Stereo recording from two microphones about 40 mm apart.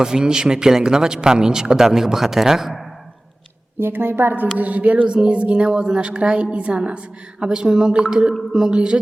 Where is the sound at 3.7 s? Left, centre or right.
Right.